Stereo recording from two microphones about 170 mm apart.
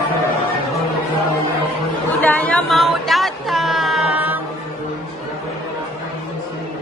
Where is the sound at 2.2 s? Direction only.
10° left (ahead or behind).